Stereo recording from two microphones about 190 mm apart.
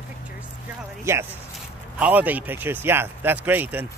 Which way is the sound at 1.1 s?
15° right (ahead or behind).